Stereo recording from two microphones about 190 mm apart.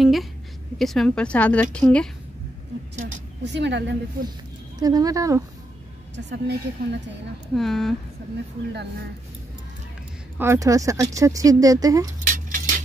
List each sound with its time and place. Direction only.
0.0 s a sound: centre (ahead or behind)
0.7 s a woman's voice: centre (ahead or behind)
3.4 s a woman's voice: 65° right (ahead or behind)
4.7 s speech: 20° right (ahead or behind)
6.1 s a woman's voice: 65° right (ahead or behind)
7.5 s speech: centre (ahead or behind)
10.3 s speech: 15° right (ahead or behind)
12.3 s a sound: 45° right (ahead or behind)